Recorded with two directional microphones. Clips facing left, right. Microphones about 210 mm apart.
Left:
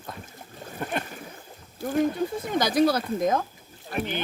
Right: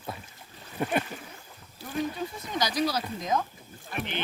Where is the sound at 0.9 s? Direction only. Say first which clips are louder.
Right 3 dB; 5° right (ahead or behind).